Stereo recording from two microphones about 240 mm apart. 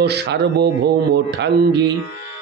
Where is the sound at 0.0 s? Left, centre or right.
Right.